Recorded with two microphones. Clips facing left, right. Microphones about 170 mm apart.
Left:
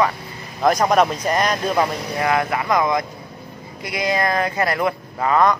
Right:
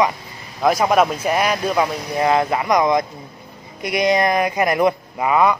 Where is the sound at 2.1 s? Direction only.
25° right (ahead or behind).